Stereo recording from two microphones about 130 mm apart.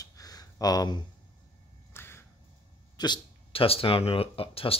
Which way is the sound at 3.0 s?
40° left (ahead or behind).